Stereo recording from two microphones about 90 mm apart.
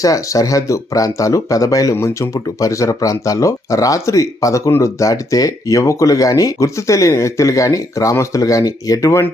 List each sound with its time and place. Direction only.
0.0 s speech: 40° left (ahead or behind)